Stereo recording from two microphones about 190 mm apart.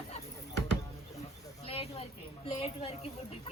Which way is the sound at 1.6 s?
30° left (ahead or behind).